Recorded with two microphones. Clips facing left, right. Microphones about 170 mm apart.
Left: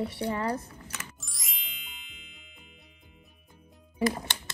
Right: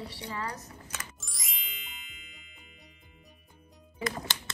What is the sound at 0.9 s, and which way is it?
Ding, centre (ahead or behind).